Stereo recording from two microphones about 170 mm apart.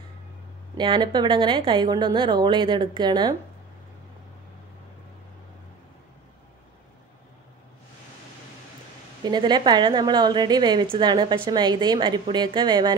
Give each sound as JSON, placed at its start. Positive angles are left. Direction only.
{"t": 0.7, "sound": "a woman's voice", "side_deg": -25}
{"t": 9.2, "sound": "a woman's voice", "side_deg": -25}